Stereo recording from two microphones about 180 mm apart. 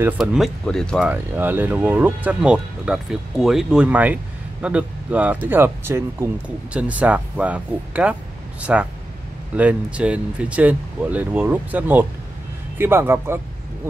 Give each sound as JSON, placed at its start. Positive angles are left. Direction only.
{"t": 0.2, "sound": "speech", "side_deg": 0}
{"t": 1.1, "sound": "speech", "side_deg": -10}